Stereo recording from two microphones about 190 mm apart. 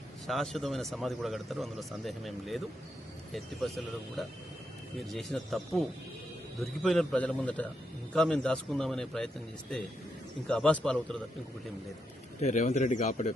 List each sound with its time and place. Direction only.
0.3 s speech: centre (ahead or behind)
12.4 s speech: 35° left (ahead or behind)